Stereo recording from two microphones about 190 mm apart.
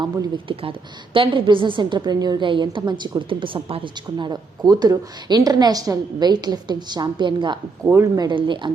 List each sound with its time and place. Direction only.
0.0 s a woman's voice: 25° right (ahead or behind)
7.9 s a woman's voice: 15° right (ahead or behind)